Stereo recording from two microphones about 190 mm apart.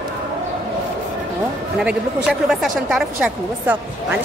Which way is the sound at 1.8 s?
Centre (ahead or behind).